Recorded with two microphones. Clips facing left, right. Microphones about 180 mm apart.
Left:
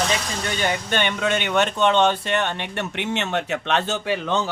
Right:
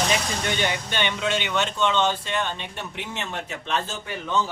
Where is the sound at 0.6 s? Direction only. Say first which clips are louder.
Left 3 dB; 50° left (ahead or behind).